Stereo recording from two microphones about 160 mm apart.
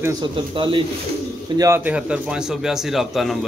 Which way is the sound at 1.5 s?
15° right (ahead or behind).